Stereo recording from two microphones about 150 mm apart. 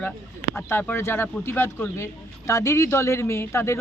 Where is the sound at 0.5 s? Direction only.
15° left (ahead or behind).